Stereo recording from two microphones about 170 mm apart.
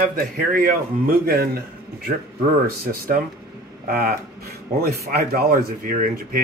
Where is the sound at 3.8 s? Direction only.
60° right (ahead or behind).